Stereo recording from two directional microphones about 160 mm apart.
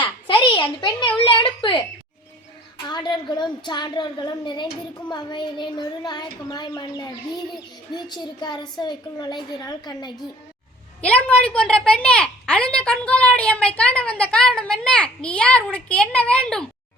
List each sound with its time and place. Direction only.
0.0 s a sound: 30° left (ahead or behind)
2.8 s a woman's voice: 25° left (ahead or behind)
11.0 s a woman's voice: 10° left (ahead or behind)